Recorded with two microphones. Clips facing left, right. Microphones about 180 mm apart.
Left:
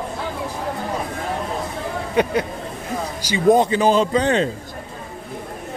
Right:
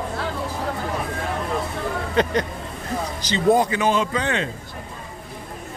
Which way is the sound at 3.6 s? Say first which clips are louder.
Left 4 dB; 30° left (ahead or behind).